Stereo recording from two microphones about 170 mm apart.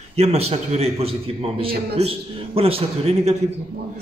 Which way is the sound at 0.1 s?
35° right (ahead or behind).